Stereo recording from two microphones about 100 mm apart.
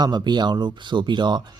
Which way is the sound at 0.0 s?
45° right (ahead or behind).